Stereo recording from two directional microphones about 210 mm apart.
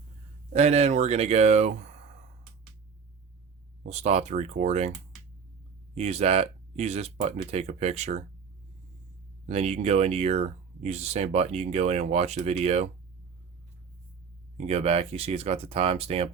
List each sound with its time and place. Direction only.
0.5 s speech: 30° right (ahead or behind)
3.8 s speech: 30° right (ahead or behind)
9.5 s speech: 30° right (ahead or behind)
14.7 s speech: 30° right (ahead or behind)